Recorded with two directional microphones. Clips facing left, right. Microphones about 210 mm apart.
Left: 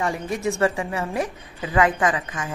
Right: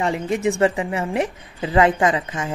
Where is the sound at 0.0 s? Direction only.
20° right (ahead or behind).